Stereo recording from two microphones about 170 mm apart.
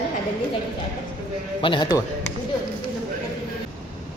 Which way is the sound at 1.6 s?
30° left (ahead or behind).